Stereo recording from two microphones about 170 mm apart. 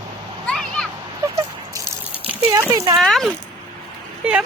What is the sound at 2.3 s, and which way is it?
Speech, 15° right (ahead or behind).